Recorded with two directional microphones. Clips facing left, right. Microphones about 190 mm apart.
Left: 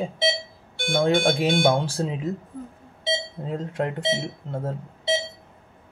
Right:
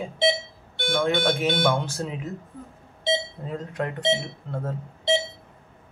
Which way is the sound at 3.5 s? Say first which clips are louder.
Left 3 dB; 25° left (ahead or behind).